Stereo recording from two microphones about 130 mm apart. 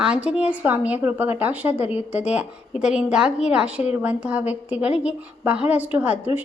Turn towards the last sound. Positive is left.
turn(degrees=-10)  # may be behind; listen again after turning